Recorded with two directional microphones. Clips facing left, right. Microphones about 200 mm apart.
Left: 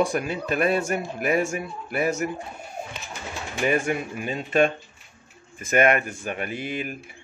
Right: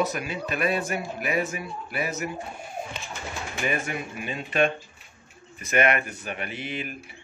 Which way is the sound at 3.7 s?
45° left (ahead or behind).